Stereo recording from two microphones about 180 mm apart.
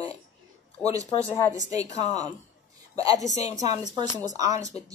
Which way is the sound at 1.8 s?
40° left (ahead or behind).